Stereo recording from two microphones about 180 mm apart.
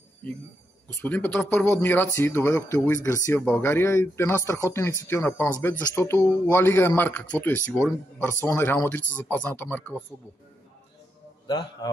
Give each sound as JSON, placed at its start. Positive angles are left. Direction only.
{"t": 0.8, "sound": "speech", "side_deg": 10}
{"t": 11.4, "sound": "a man's voice", "side_deg": 25}